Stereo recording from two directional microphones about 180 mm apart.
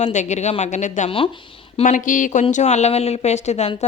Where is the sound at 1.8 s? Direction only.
45° left (ahead or behind).